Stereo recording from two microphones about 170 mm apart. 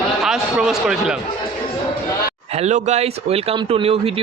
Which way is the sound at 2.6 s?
40° right (ahead or behind).